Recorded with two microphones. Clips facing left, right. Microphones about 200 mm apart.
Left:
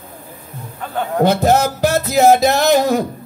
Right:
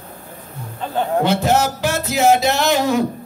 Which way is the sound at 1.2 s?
40° left (ahead or behind).